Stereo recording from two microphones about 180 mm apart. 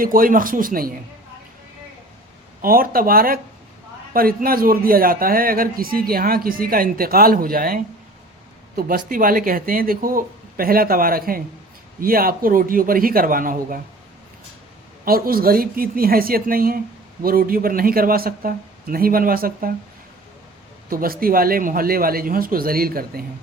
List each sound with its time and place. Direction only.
0.0 s speech: 50° right (ahead or behind)
2.6 s speech: 55° right (ahead or behind)
15.0 s a woman's voice: 55° right (ahead or behind)
20.9 s speech: 55° right (ahead or behind)